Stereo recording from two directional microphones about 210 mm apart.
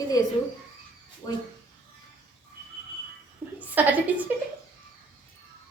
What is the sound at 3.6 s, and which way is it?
Speech, 5° right (ahead or behind).